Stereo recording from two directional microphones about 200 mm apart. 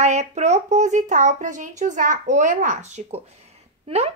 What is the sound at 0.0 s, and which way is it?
Speech, 35° right (ahead or behind).